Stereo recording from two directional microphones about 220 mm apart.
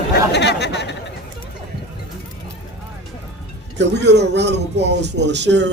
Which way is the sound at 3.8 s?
50° right (ahead or behind).